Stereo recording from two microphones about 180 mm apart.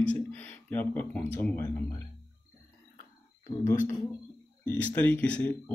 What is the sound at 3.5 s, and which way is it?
Speech, 30° left (ahead or behind).